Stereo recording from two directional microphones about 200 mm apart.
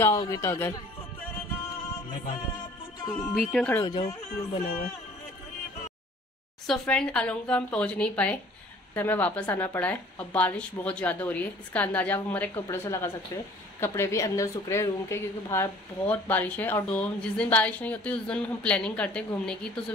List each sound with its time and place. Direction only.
0.0 s a woman's voice: 15° left (ahead or behind)
3.2 s a woman's voice: 5° left (ahead or behind)
3.8 s speech: 20° left (ahead or behind)
6.7 s a woman's voice: 5° left (ahead or behind)